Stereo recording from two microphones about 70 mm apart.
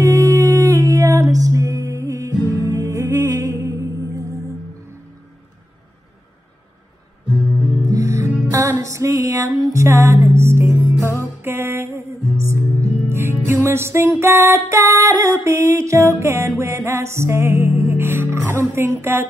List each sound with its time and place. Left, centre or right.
0.0 s music: right
7.8 s music: right